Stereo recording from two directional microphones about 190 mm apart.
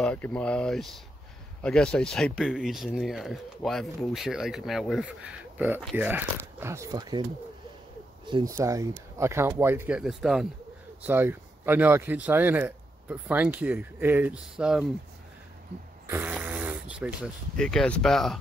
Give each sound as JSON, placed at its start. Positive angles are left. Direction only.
{"t": 0.0, "sound": "speech", "side_deg": 5}
{"t": 8.3, "sound": "speech", "side_deg": -20}
{"t": 16.1, "sound": "speech", "side_deg": -10}